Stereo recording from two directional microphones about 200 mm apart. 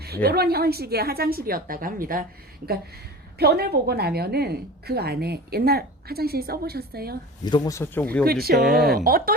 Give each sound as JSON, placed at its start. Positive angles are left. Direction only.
{"t": 0.0, "sound": "a woman's voice", "side_deg": -50}
{"t": 3.3, "sound": "a woman's voice", "side_deg": -50}
{"t": 7.4, "sound": "speech", "side_deg": 20}
{"t": 8.2, "sound": "a woman's voice", "side_deg": -50}
{"t": 8.6, "sound": "speech", "side_deg": 0}
{"t": 9.0, "sound": "a woman's voice", "side_deg": -45}